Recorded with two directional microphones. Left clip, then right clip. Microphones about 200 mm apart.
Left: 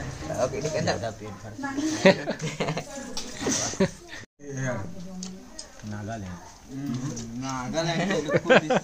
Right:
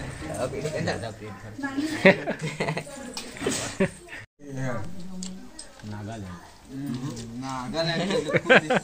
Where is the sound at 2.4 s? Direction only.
30° right (ahead or behind).